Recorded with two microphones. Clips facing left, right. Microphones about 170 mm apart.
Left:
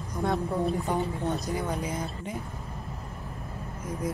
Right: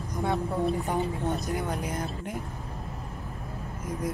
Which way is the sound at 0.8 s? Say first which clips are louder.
Even; 20° right (ahead or behind).